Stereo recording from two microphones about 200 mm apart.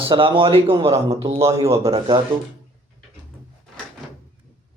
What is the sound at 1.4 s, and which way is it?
Speech, 15° right (ahead or behind).